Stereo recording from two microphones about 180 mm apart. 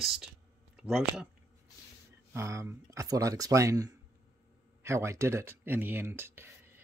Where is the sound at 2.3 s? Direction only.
15° right (ahead or behind).